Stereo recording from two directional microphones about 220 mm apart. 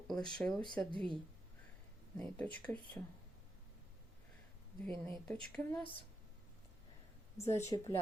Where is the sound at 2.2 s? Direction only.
5° left (ahead or behind).